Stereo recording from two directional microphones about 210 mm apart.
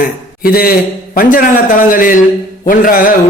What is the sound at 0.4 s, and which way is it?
A man's voice, 45° left (ahead or behind).